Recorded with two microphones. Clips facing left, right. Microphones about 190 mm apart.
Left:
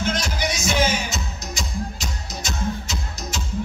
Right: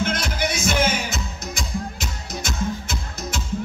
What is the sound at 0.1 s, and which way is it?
Music, 55° right (ahead or behind).